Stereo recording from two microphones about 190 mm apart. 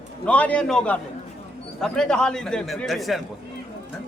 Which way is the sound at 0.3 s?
5° left (ahead or behind).